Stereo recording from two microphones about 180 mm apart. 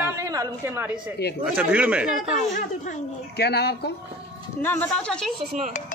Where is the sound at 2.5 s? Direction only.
45° left (ahead or behind).